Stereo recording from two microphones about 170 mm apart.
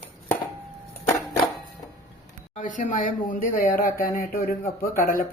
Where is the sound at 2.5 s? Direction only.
50° left (ahead or behind).